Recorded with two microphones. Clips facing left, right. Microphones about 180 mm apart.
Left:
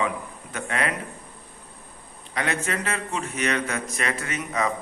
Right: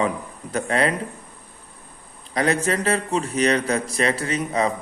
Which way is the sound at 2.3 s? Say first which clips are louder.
Right 6 dB; 35° right (ahead or behind).